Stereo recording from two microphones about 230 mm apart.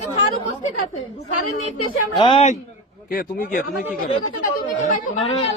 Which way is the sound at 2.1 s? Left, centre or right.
Left.